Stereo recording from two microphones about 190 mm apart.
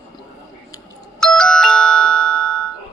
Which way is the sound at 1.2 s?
5° left (ahead or behind).